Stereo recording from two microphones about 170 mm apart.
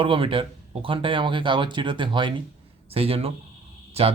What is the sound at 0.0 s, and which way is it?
A man's voice, 30° right (ahead or behind).